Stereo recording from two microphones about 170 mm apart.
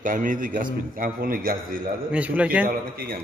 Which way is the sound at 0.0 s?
55° right (ahead or behind).